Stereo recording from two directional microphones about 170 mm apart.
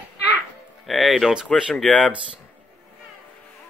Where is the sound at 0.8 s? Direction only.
Centre (ahead or behind).